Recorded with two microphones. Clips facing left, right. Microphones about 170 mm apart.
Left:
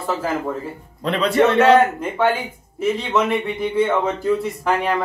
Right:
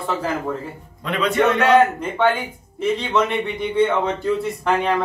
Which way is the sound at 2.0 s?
5° left (ahead or behind).